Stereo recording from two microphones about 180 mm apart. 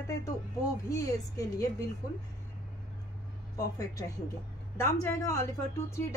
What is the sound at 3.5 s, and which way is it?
A woman's voice, 20° left (ahead or behind).